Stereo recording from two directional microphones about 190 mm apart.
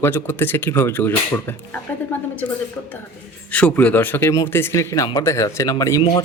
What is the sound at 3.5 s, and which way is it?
Speech, 5° left (ahead or behind).